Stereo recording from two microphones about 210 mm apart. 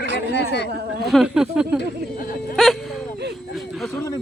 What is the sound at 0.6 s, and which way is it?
Speech, 50° right (ahead or behind).